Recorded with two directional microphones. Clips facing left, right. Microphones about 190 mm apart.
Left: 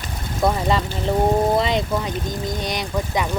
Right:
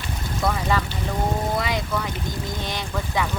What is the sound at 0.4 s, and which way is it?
Speech, 20° left (ahead or behind).